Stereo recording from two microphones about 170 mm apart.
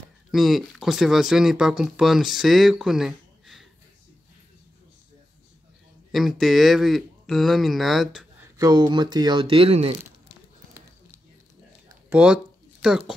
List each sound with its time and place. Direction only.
0.3 s speech: centre (ahead or behind)
6.1 s speech: centre (ahead or behind)
8.5 s speech: 25° right (ahead or behind)
12.1 s speech: 5° right (ahead or behind)